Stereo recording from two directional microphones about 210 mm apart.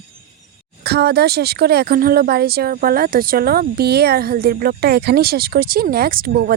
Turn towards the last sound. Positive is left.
turn(degrees=-40)  # may be behind; listen again after turning